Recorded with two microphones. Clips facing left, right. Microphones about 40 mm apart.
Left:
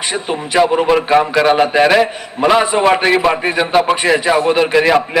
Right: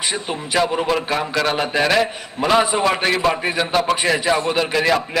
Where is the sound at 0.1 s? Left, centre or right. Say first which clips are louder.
Left 7 dB; centre.